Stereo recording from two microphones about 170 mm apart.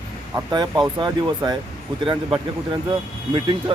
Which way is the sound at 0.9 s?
25° right (ahead or behind).